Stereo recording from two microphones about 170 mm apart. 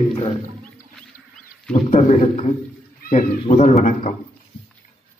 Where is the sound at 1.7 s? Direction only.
45° left (ahead or behind).